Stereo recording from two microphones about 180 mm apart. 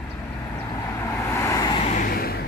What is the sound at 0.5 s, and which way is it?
Vehicle, 15° left (ahead or behind).